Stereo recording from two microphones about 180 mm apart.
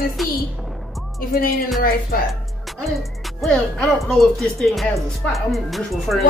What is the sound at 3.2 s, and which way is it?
Speech, centre (ahead or behind).